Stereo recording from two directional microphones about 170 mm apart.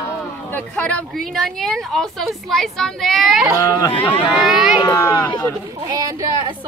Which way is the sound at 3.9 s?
35° left (ahead or behind).